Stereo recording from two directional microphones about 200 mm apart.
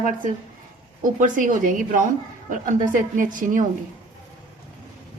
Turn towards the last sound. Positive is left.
turn(degrees=-40)  # may be behind; listen again after turning